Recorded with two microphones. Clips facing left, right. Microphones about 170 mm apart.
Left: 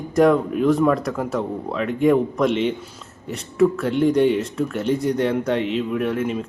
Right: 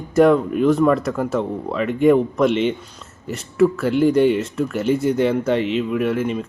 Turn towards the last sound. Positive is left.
turn(degrees=0)  # may be behind; listen again after turning